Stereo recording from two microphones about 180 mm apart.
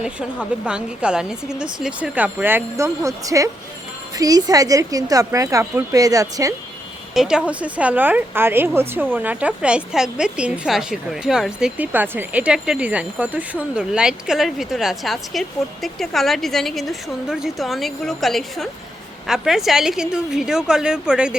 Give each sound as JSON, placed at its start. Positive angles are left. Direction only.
{"t": 0.0, "sound": "a woman's voice", "side_deg": -5}
{"t": 7.1, "sound": "a woman's voice", "side_deg": -5}